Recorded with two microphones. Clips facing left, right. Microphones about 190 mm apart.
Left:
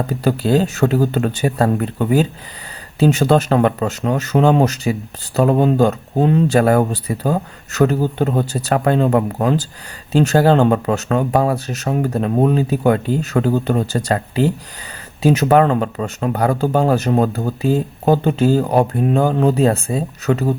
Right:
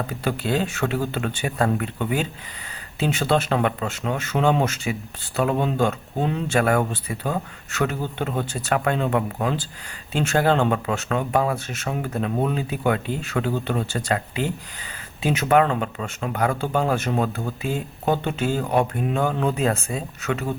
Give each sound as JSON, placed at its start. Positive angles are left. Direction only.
{"t": 0.1, "sound": "speech", "side_deg": 40}